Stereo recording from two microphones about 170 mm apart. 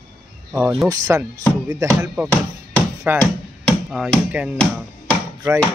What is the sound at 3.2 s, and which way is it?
Music, 5° left (ahead or behind).